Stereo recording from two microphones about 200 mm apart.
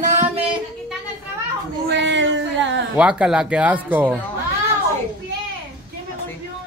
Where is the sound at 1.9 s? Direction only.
60° right (ahead or behind).